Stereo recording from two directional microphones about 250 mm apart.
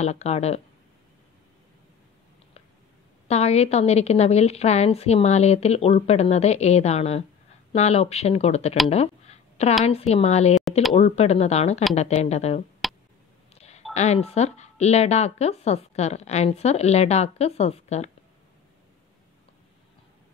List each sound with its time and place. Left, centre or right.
0.0 s speech: left
3.3 s speech: left
8.9 s a sound: left
9.8 s speech: left
13.6 s a sound: left
13.9 s speech: left